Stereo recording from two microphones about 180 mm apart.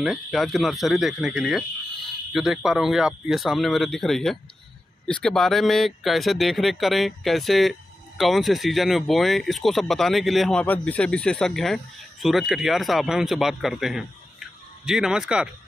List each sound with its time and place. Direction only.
0.0 s speech: centre (ahead or behind)